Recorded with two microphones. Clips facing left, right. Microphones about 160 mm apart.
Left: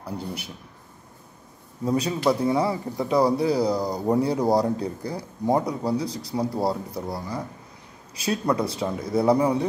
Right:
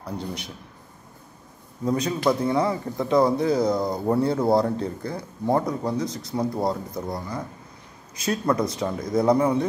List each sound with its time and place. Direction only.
0.0 s speech: 5° left (ahead or behind)
2.0 s speech: 10° left (ahead or behind)
3.3 s speech: 35° left (ahead or behind)
3.7 s speech: 10° left (ahead or behind)
5.9 s speech: 35° left (ahead or behind)
6.3 s speech: 10° left (ahead or behind)
8.3 s speech: 25° left (ahead or behind)
8.8 s speech: 5° left (ahead or behind)